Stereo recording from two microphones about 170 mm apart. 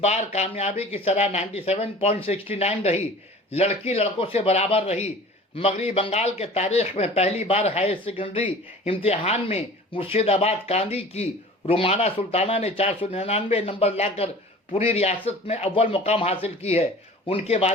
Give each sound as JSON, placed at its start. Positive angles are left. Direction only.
{"t": 0.0, "sound": "speech", "side_deg": 40}